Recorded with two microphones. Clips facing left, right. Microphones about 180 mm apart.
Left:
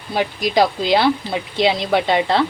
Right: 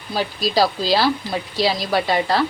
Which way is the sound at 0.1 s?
20° left (ahead or behind).